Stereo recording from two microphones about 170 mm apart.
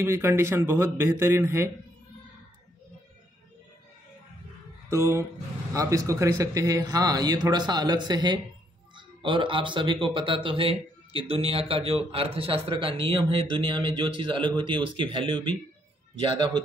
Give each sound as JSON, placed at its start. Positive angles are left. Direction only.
{"t": 0.0, "sound": "a man's voice", "side_deg": -15}
{"t": 4.8, "sound": "speech", "side_deg": -15}